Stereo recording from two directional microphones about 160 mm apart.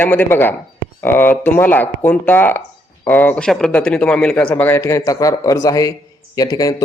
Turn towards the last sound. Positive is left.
turn(degrees=20)  # may be behind; listen again after turning